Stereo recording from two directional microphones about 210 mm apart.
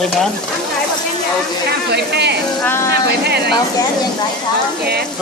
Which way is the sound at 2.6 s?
10° left (ahead or behind).